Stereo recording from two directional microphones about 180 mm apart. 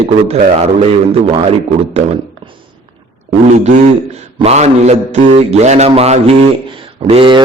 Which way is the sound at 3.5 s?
40° right (ahead or behind).